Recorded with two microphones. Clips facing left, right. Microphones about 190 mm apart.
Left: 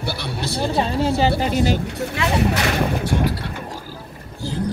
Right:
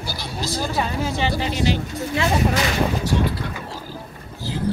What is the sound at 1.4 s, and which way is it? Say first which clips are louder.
Speech: left 3 dB; 45° left (ahead or behind).